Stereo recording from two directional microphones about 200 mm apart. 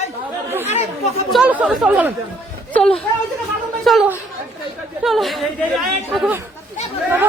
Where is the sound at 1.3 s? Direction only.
5° right (ahead or behind).